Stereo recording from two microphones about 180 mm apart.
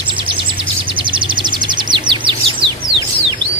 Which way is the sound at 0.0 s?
30° right (ahead or behind).